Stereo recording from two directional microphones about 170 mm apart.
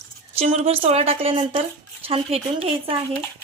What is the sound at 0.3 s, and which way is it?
Speech, 35° right (ahead or behind).